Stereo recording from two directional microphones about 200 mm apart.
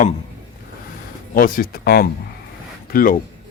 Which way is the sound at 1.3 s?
45° left (ahead or behind).